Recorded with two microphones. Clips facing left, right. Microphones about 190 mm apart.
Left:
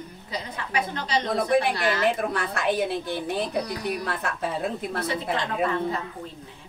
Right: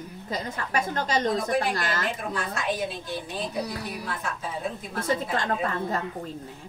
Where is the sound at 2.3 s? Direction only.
60° left (ahead or behind).